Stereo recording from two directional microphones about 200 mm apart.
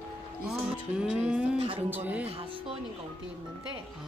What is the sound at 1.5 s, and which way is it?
Speech, 25° right (ahead or behind).